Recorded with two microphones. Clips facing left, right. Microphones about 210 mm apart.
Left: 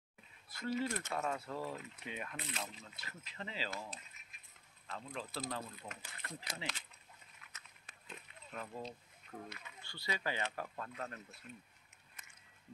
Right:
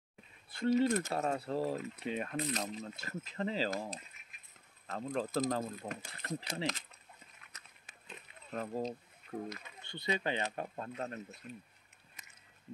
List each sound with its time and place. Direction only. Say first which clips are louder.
0.7 s speech: right 8 dB; 40° right (ahead or behind)
8.5 s speech: right 8 dB; 40° right (ahead or behind)
9.8 s speech: right 7 dB; 20° right (ahead or behind)